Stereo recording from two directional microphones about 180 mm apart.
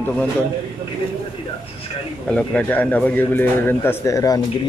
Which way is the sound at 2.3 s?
5° left (ahead or behind).